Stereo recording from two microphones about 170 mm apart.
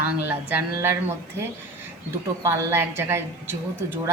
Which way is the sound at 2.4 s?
15° right (ahead or behind).